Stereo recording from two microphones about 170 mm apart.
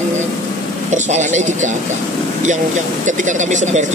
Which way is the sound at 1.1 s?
45° right (ahead or behind).